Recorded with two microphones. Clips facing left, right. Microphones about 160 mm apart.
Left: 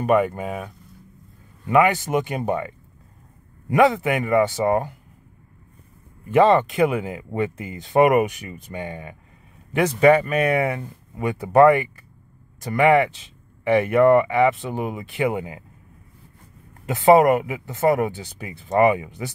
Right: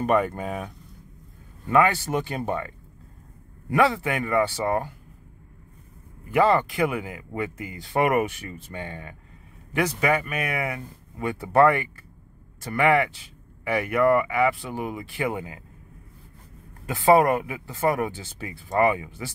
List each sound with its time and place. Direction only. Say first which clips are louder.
0.0 s speech: left 3 dB; 5° left (ahead or behind)
1.7 s speech: left 3 dB; 15° left (ahead or behind)
6.3 s speech: left 4 dB; 20° left (ahead or behind)
16.8 s speech: left 4 dB; 20° left (ahead or behind)